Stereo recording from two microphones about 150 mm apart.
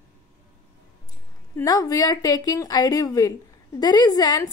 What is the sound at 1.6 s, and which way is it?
A woman's voice, 25° left (ahead or behind).